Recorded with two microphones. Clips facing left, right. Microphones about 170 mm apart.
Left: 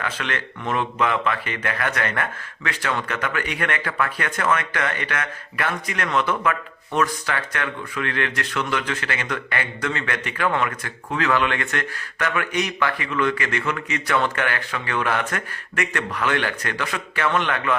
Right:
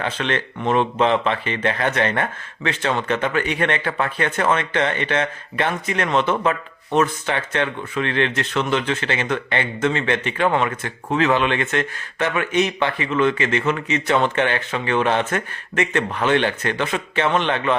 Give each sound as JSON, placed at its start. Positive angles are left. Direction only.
{"t": 0.0, "sound": "speech", "side_deg": -30}